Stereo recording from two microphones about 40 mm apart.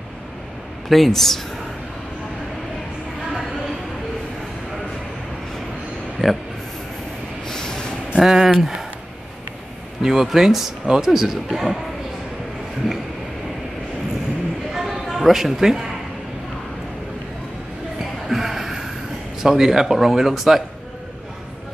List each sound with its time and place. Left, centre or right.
0.8 s speech: centre
6.2 s speech: centre
7.4 s vehicle: centre
8.2 s speech: centre
10.0 s speech: centre
14.7 s a sound: centre
18.3 s a sound: centre
19.4 s speech: centre